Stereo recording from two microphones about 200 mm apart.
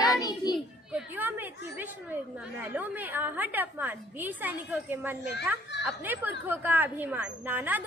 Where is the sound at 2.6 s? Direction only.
10° right (ahead or behind).